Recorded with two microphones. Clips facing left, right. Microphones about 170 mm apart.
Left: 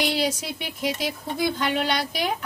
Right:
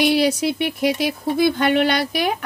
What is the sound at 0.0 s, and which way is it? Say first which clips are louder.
Speech: right 8 dB; 65° right (ahead or behind).